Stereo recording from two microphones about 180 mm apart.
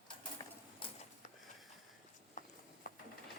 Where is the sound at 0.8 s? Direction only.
40° left (ahead or behind).